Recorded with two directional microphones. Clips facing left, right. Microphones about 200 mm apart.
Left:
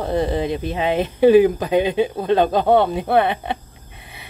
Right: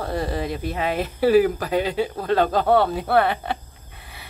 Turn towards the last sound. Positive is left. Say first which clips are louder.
# left 2 dB
turn(degrees=20)  # may be behind; listen again after turning